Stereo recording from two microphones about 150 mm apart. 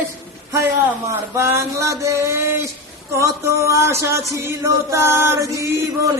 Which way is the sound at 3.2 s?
20° right (ahead or behind).